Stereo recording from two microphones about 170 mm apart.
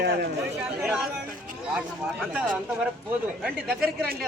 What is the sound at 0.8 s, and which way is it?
Speech, 5° right (ahead or behind).